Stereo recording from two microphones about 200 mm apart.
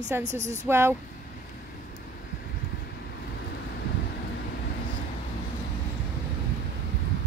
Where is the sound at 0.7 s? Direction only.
10° right (ahead or behind).